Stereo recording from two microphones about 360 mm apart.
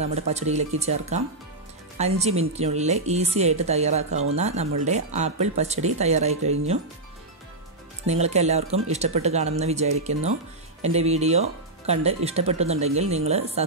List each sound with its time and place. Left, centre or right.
0.0 s speech: centre
8.1 s speech: centre